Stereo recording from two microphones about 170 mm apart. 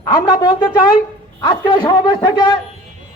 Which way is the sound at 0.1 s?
25° left (ahead or behind).